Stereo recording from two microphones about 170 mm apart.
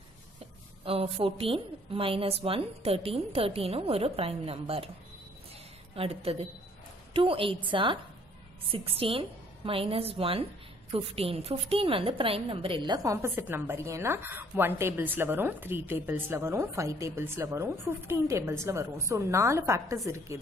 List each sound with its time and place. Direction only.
0.8 s a woman's voice: 35° right (ahead or behind)
5.9 s a woman's voice: 35° right (ahead or behind); by 20.0 s 15° right (ahead or behind)